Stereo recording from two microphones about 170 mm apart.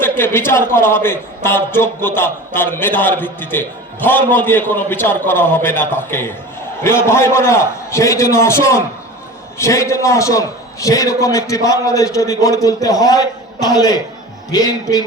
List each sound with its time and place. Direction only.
0.0 s a man's voice: 15° left (ahead or behind)